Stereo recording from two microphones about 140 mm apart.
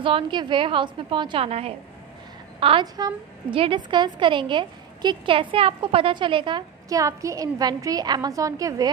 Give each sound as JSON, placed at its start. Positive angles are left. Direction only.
{"t": 0.0, "sound": "a woman's voice", "side_deg": -35}
{"t": 2.6, "sound": "a woman's voice", "side_deg": -35}